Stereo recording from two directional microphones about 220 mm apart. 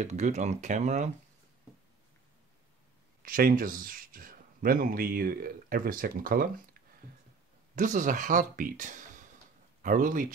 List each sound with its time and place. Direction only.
0.0 s speech: 30° right (ahead or behind)
3.2 s speech: 40° right (ahead or behind)
7.7 s speech: 35° right (ahead or behind)